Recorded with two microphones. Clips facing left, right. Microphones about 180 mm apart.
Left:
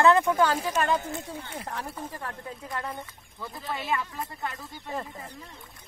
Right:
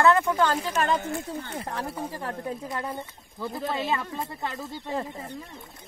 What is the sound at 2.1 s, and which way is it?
Speech, 30° right (ahead or behind).